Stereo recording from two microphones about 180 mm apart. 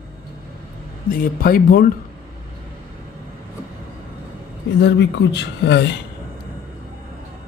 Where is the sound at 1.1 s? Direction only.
50° left (ahead or behind).